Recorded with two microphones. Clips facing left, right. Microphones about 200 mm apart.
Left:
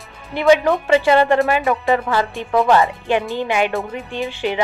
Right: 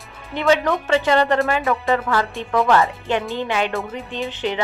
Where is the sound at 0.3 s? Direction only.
15° left (ahead or behind).